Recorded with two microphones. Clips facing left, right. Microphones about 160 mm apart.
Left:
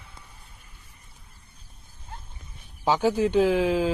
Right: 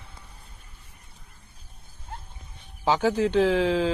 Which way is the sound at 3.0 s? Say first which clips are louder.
Left 1 dB; 10° left (ahead or behind).